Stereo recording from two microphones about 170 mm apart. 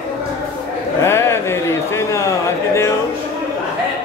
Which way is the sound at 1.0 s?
15° left (ahead or behind).